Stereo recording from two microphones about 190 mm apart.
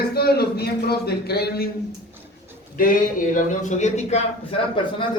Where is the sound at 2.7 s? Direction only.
45° left (ahead or behind).